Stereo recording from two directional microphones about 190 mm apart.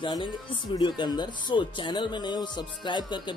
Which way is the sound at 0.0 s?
25° left (ahead or behind).